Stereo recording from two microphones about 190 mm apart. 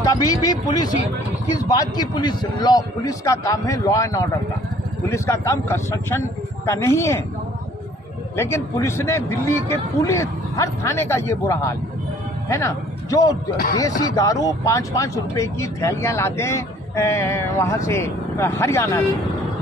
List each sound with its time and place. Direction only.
0.0 s a man's voice: 20° left (ahead or behind)
8.4 s a man's voice: 15° left (ahead or behind)